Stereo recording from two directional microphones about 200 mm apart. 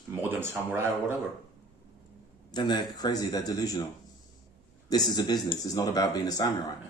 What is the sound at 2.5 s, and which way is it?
Speech, 20° left (ahead or behind).